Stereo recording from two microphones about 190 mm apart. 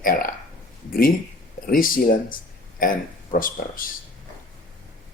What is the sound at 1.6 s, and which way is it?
Speech, 50° left (ahead or behind).